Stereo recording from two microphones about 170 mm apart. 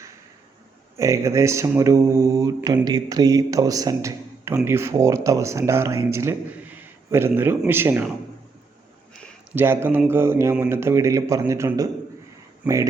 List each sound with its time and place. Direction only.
0.9 s mantra: 20° right (ahead or behind)
4.5 s speech: 15° right (ahead or behind)
9.6 s speech: 10° right (ahead or behind)
12.6 s mantra: 20° right (ahead or behind)